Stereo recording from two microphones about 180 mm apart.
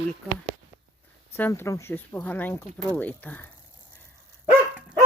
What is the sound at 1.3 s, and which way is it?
Speech, 10° left (ahead or behind).